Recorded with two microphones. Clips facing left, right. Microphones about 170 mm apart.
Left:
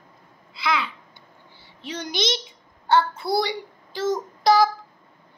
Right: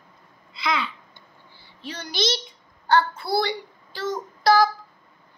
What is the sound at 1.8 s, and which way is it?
Child singing, 15° left (ahead or behind).